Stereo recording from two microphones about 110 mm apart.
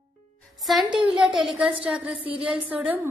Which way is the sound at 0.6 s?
Centre (ahead or behind).